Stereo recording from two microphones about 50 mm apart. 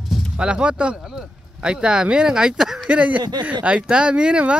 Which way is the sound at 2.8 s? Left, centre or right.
Right.